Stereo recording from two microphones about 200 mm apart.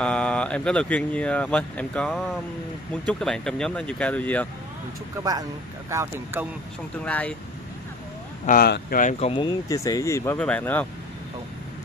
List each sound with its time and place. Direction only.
0.0 s speech: 5° left (ahead or behind)
5.9 s speech: 15° right (ahead or behind)
7.1 s speech: 5° left (ahead or behind)
8.5 s speech: 50° left (ahead or behind)
9.3 s speech: 25° left (ahead or behind); by 10.9 s 10° left (ahead or behind)